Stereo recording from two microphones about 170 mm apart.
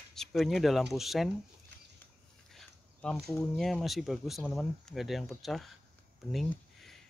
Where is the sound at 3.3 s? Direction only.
Centre (ahead or behind).